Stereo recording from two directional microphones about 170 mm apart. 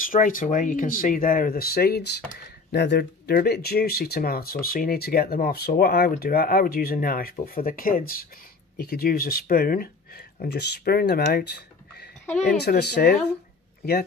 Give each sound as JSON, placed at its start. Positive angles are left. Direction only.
{"t": 0.1, "sound": "speech", "side_deg": 50}